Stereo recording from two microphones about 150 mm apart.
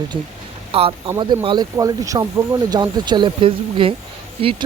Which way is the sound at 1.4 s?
30° right (ahead or behind).